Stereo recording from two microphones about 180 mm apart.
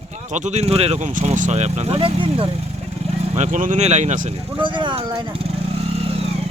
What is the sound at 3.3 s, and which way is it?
Speech, 45° right (ahead or behind).